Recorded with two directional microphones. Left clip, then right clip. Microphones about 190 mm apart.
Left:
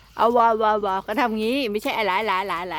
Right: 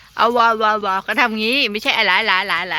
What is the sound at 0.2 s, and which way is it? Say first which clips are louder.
Speech: right 3 dB; 10° left (ahead or behind).